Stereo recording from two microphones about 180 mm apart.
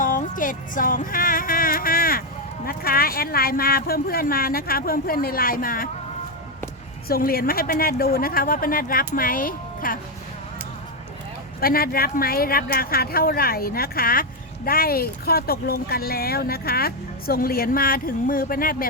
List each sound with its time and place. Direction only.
0.0 s music: 50° left (ahead or behind)
2.6 s speech: 55° left (ahead or behind)
7.1 s speech: 55° left (ahead or behind)
11.6 s speech: 55° left (ahead or behind)